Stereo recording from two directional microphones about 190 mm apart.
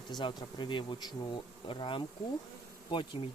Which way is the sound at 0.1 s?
25° left (ahead or behind).